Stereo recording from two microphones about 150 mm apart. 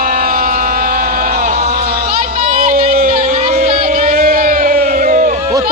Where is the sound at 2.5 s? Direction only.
65° right (ahead or behind).